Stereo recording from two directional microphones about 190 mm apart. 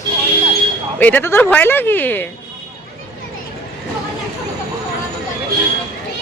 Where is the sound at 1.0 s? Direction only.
10° left (ahead or behind).